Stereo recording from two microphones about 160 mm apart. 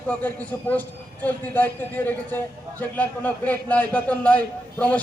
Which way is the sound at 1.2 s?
10° left (ahead or behind).